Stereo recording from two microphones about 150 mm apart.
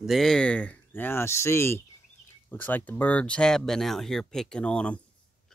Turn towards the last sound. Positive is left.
turn(degrees=5)  # may be behind; listen again after turning